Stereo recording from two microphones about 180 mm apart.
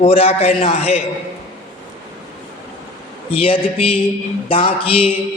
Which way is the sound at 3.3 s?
30° left (ahead or behind).